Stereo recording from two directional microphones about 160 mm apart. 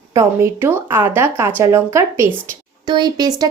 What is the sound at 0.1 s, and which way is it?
Speech, 15° right (ahead or behind).